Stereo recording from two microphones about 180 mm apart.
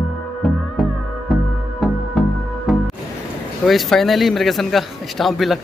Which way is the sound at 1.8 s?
Centre (ahead or behind).